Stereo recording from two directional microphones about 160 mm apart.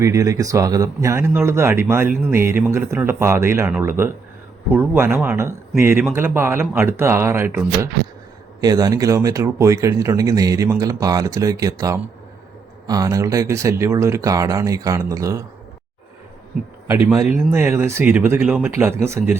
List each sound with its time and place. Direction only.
0.0 s speech: 20° right (ahead or behind)
17.5 s speech: 15° right (ahead or behind)